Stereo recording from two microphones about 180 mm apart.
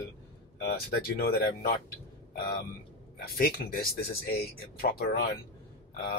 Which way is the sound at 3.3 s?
55° left (ahead or behind).